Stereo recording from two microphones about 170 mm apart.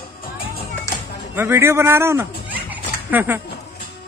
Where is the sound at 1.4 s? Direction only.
15° right (ahead or behind).